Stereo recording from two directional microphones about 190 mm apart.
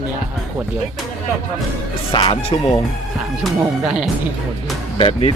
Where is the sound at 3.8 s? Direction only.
5° right (ahead or behind).